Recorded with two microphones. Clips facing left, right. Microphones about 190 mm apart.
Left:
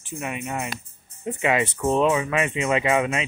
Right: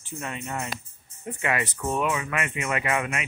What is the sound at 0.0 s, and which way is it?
Speech, 15° left (ahead or behind).